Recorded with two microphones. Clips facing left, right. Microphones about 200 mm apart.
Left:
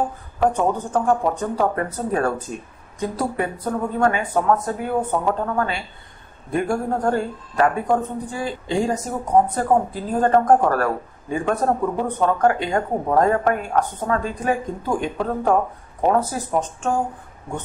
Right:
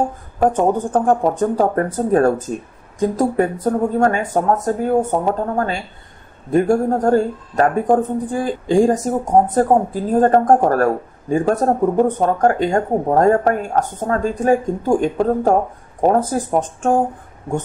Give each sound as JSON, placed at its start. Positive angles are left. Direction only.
{"t": 0.4, "sound": "speech", "side_deg": -50}